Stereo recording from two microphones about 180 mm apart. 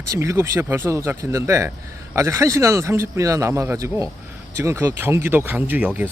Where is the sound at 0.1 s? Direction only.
15° right (ahead or behind).